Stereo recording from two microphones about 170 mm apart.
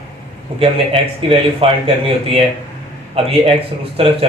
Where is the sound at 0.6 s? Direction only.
35° right (ahead or behind).